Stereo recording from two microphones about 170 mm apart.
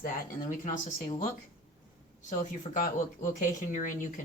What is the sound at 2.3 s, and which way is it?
Speech, 50° left (ahead or behind).